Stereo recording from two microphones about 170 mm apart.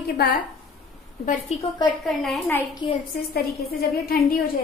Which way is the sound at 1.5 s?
40° left (ahead or behind).